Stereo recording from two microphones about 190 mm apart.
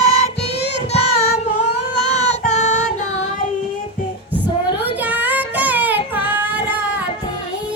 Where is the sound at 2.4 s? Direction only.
40° left (ahead or behind).